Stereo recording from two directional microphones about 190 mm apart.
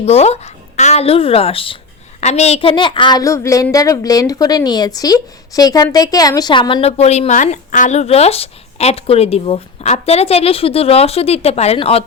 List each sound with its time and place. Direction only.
0.0 s a woman's voice: 35° left (ahead or behind)